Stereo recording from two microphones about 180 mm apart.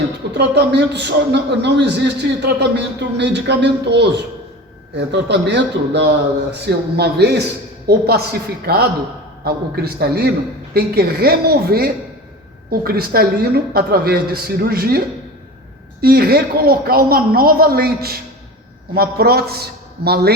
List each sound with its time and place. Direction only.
0.3 s a man's voice: 70° right (ahead or behind)